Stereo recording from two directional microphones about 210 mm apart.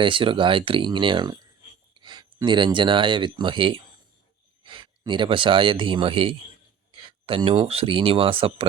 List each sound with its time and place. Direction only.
0.0 s speech: 25° right (ahead or behind)